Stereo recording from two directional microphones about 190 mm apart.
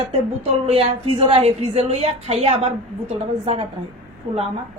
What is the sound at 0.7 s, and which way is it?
A woman's voice, 30° right (ahead or behind).